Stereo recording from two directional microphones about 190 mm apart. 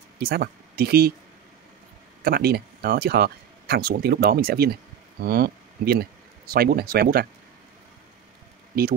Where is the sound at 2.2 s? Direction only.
55° right (ahead or behind).